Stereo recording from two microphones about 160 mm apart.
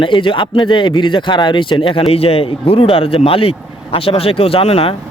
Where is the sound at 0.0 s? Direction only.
30° left (ahead or behind).